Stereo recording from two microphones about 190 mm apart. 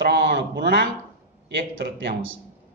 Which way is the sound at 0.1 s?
65° right (ahead or behind).